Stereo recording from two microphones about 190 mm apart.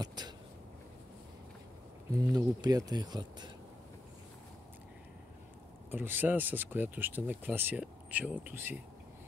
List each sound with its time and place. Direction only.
0.0 s a sound: 20° right (ahead or behind)
2.1 s speech: 20° right (ahead or behind)
5.9 s speech: 10° right (ahead or behind)